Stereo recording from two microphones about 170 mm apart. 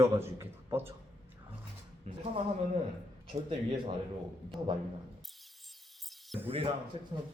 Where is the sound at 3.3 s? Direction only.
30° right (ahead or behind).